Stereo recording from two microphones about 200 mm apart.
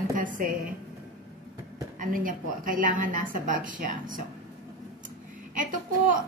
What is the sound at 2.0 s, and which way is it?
A woman's voice, 45° right (ahead or behind).